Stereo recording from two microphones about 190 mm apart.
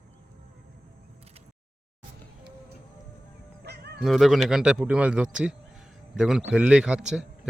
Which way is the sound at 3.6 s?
60° right (ahead or behind).